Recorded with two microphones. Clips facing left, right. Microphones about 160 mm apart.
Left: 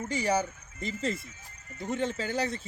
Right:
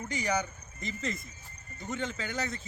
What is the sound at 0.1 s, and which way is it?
Speech, 30° left (ahead or behind).